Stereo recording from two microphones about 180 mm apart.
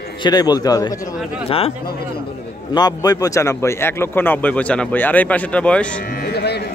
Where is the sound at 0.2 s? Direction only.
25° left (ahead or behind).